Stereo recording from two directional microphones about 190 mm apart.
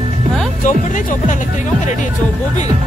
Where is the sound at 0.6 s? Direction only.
40° left (ahead or behind).